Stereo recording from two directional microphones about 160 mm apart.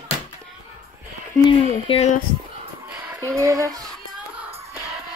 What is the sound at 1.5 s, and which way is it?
Speech, 35° left (ahead or behind).